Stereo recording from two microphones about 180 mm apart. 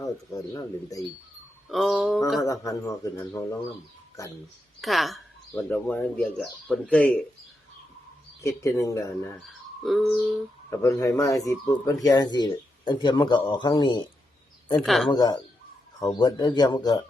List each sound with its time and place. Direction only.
0.0 s speech: 20° left (ahead or behind)
1.7 s mantra: centre (ahead or behind)
2.4 s speech: 20° left (ahead or behind)
4.8 s mantra: centre (ahead or behind)
5.5 s speech: 10° left (ahead or behind)
8.4 s speech: 15° left (ahead or behind)
9.5 s speech: centre (ahead or behind)
10.7 s speech: 20° left (ahead or behind)
14.8 s mantra: centre (ahead or behind)
15.1 s speech: 25° left (ahead or behind)